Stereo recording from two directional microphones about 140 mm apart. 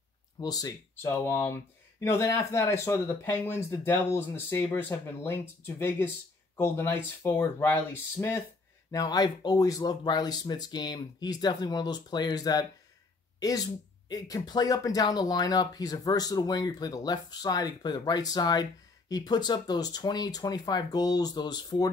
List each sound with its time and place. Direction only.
0.4 s speech: 30° left (ahead or behind)
0.9 s speech: 15° left (ahead or behind)
8.9 s speech: 25° left (ahead or behind)